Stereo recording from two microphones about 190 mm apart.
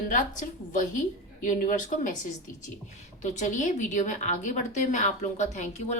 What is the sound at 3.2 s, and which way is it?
A woman's voice, 40° left (ahead or behind).